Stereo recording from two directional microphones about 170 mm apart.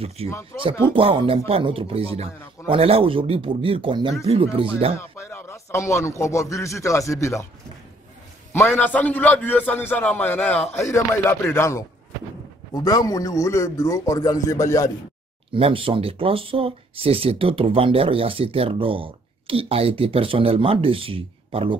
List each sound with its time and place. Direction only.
0.5 s a man's voice: 10° left (ahead or behind)
0.8 s speech: 30° right (ahead or behind)
4.9 s a man's voice: 15° left (ahead or behind)
8.5 s a man's voice: 10° left (ahead or behind)
12.8 s a man's voice: 20° left (ahead or behind)
15.5 s speech: 30° right (ahead or behind)